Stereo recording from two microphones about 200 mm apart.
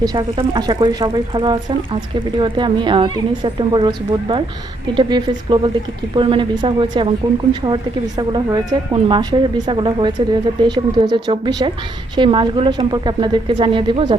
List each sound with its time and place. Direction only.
0.0 s a woman's voice: 20° right (ahead or behind)